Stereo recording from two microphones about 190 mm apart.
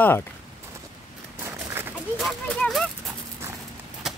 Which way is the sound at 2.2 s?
Centre (ahead or behind).